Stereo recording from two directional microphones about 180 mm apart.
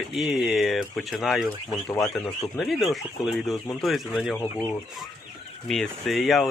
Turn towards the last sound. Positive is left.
turn(degrees=0)  # may be behind; listen again after turning